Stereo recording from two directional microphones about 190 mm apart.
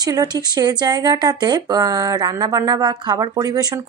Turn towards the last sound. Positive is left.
turn(degrees=-20)  # may be behind; listen again after turning